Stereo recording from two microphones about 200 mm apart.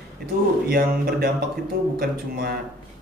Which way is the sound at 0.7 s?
50° right (ahead or behind).